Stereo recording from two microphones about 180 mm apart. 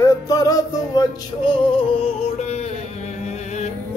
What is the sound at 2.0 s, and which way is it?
Music, 35° left (ahead or behind).